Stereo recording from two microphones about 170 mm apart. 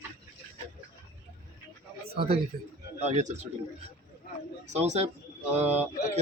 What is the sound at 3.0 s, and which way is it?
Speech, 40° right (ahead or behind).